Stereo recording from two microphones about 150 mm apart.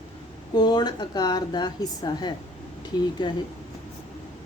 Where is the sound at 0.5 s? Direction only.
30° left (ahead or behind).